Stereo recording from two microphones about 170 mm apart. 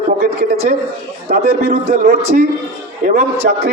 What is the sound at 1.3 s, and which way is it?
A man's voice, 60° right (ahead or behind).